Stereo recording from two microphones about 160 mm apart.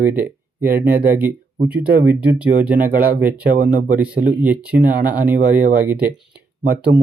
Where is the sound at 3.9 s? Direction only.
10° right (ahead or behind).